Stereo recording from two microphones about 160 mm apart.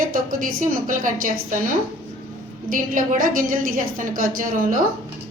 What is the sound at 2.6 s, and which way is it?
A woman's voice, 55° right (ahead or behind).